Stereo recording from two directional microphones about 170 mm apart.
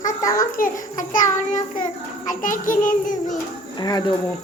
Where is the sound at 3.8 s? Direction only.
25° left (ahead or behind).